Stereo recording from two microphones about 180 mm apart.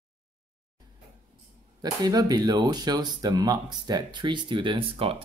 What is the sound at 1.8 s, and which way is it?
Speech, 20° right (ahead or behind).